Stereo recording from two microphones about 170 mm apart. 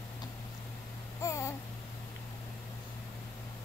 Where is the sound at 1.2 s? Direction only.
15° left (ahead or behind).